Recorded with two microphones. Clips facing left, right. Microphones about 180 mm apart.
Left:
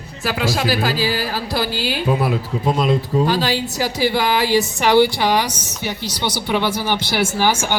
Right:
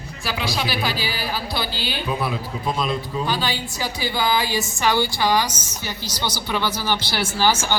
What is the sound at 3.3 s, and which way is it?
A woman's voice, 90° left.